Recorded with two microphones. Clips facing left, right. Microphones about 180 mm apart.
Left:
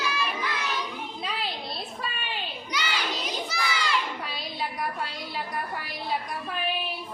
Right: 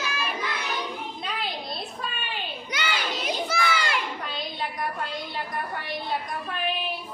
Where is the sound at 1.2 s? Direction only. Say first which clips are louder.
Left 1 dB; centre (ahead or behind).